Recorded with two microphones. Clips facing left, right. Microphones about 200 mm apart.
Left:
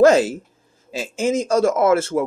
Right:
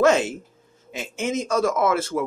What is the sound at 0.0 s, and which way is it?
A man's voice, 35° left (ahead or behind).